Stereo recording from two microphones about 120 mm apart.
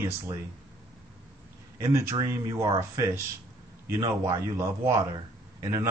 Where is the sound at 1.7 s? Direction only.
25° right (ahead or behind).